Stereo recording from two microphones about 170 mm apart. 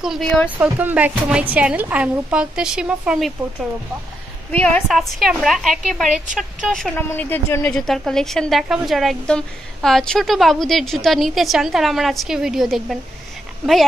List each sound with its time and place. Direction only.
0.0 s a woman's voice: centre (ahead or behind)
0.6 s a woman's voice: 10° right (ahead or behind)
4.5 s a woman's voice: 10° left (ahead or behind)
7.7 s a woman's voice: centre (ahead or behind)